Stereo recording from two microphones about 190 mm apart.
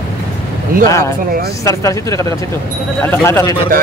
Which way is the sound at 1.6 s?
15° left (ahead or behind).